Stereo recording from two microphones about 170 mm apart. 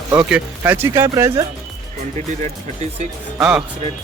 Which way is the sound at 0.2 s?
5° right (ahead or behind).